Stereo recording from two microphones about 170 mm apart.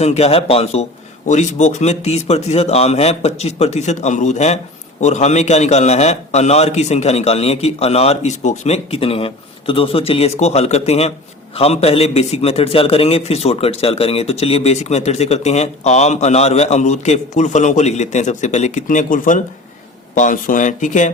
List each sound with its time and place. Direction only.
0.0 s speech: 40° left (ahead or behind)